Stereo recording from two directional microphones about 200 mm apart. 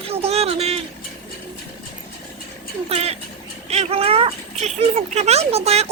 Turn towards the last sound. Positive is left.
turn(degrees=-30)  # may be behind; listen again after turning